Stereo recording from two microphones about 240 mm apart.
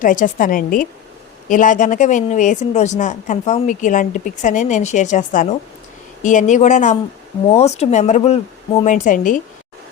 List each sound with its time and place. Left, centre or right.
0.0 s speech: left